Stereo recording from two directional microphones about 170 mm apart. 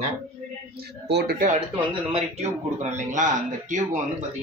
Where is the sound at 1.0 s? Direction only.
70° right (ahead or behind).